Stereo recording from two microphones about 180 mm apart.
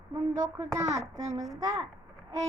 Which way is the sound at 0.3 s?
20° right (ahead or behind).